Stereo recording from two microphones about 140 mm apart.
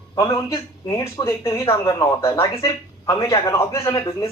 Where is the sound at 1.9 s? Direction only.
35° left (ahead or behind).